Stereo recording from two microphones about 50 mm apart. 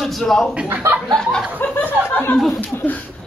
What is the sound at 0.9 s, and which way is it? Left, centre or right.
Speech, right.